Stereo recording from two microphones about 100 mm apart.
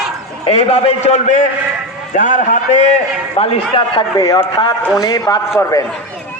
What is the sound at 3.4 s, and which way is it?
Speech, 70° left (ahead or behind).